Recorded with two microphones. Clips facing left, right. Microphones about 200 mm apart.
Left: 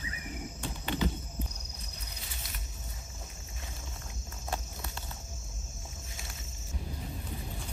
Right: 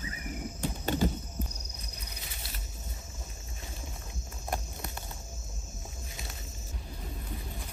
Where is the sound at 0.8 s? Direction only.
45° right (ahead or behind).